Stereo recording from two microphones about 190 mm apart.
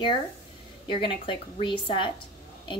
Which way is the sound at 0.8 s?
25° left (ahead or behind).